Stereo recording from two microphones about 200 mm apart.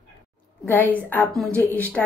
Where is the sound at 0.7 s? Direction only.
10° left (ahead or behind).